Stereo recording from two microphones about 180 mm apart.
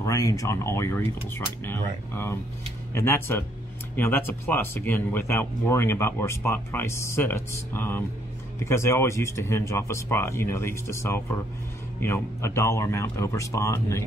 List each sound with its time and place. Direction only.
0.0 s speech: 15° left (ahead or behind)